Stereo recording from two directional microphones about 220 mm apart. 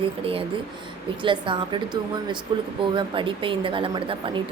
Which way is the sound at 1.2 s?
20° right (ahead or behind).